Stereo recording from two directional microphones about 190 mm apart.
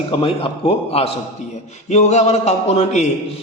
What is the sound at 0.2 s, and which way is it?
A man's voice, 30° left (ahead or behind).